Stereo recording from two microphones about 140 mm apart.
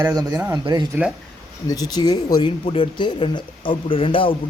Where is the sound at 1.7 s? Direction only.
30° left (ahead or behind).